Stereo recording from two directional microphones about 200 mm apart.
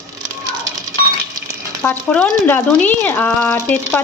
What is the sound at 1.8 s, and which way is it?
Speech, 5° left (ahead or behind).